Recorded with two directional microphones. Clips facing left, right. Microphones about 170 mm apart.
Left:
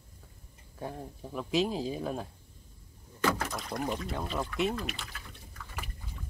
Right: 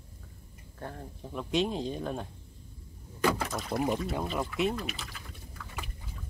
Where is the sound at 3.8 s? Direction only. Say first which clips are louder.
Right 4 dB; 10° right (ahead or behind).